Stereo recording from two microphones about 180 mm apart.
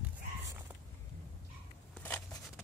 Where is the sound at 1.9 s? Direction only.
10° left (ahead or behind).